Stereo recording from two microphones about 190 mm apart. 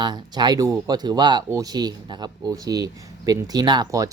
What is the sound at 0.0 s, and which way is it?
Speech, 20° right (ahead or behind).